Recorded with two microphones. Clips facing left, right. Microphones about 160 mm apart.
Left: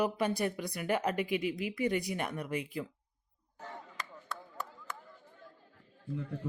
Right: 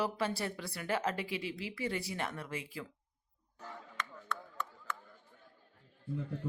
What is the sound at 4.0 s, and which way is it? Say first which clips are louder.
Chop: right 6 dB; 35° left (ahead or behind).